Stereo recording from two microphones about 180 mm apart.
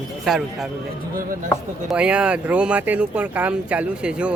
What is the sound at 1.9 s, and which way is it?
Speech, 5° right (ahead or behind).